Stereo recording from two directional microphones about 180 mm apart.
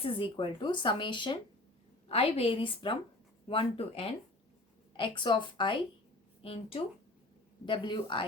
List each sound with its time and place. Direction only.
0.0 s a woman's voice: 30° left (ahead or behind)